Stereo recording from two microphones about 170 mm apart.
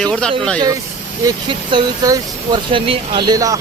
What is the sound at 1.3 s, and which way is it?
Speech, 30° right (ahead or behind).